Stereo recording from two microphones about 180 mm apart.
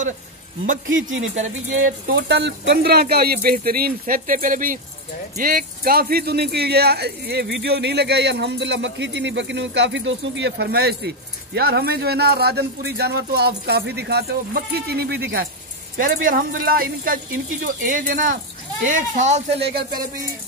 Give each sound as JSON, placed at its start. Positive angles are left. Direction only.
{"t": 0.8, "sound": "speech", "side_deg": -90}
{"t": 1.3, "sound": "speech", "side_deg": -45}
{"t": 2.1, "sound": "speech", "side_deg": -70}
{"t": 16.0, "sound": "speech", "side_deg": -50}
{"t": 19.6, "sound": "speech", "side_deg": -55}